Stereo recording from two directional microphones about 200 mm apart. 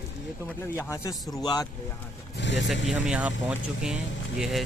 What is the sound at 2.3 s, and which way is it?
Speech, 65° left (ahead or behind).